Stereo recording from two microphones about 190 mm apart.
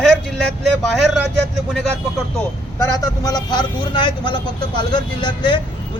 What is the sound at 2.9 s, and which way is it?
Speech, 20° left (ahead or behind).